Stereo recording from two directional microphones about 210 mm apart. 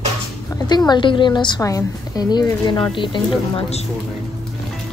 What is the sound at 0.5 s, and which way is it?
A woman's voice, 20° left (ahead or behind).